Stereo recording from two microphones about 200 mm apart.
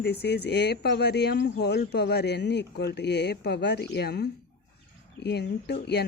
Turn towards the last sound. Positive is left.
turn(degrees=55)  # may be behind; listen again after turning